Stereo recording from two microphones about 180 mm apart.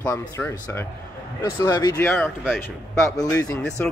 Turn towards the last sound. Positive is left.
turn(degrees=20)  # may be behind; listen again after turning